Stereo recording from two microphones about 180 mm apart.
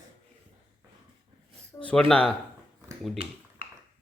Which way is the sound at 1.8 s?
5° left (ahead or behind).